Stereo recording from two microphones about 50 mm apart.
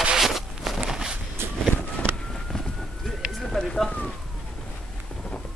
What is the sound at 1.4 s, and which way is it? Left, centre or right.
Vehicle, right.